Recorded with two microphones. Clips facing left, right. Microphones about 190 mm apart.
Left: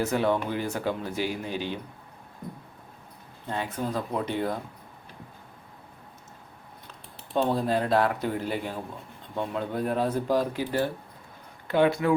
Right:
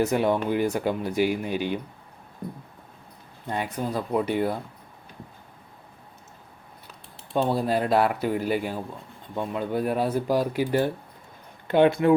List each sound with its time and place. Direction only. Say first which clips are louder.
0.0 s speech: right 3 dB; 15° right (ahead or behind)
3.4 s speech: right 2 dB; 15° right (ahead or behind)
7.3 s speech: right 1 dB; 10° right (ahead or behind)